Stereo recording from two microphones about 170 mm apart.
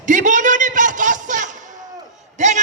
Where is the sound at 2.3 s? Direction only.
45° right (ahead or behind).